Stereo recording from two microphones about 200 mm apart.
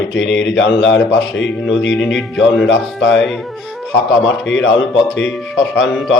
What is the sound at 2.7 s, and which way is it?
Speech, 65° left (ahead or behind).